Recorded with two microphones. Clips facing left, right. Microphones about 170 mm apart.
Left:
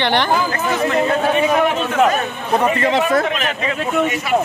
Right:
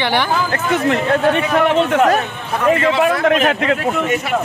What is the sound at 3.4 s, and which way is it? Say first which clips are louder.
Speech: right 6 dB; 65° right (ahead or behind).